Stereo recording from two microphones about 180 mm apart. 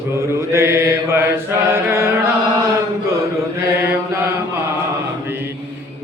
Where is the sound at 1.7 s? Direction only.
15° right (ahead or behind).